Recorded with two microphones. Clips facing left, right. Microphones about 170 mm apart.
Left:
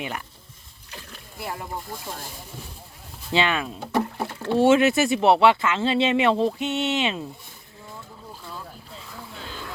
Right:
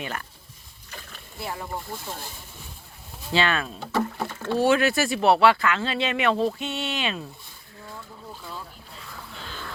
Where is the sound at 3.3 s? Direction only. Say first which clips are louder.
Left 1 dB; 15° left (ahead or behind).